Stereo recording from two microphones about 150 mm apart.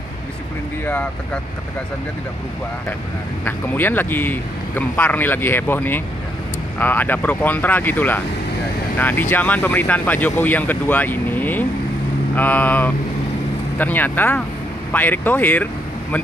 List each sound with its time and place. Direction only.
0.8 s speech: 10° left (ahead or behind)
3.4 s speech: 15° left (ahead or behind)